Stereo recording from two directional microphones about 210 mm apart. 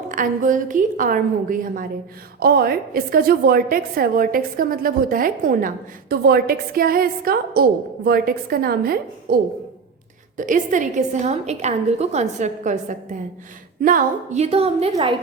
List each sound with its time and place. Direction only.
0.1 s a woman's voice: 40° right (ahead or behind); by 15.2 s 25° right (ahead or behind)